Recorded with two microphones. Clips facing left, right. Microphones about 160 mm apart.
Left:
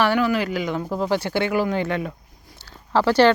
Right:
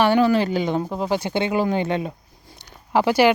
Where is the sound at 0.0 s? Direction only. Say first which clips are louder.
Right 3 dB; 25° right (ahead or behind).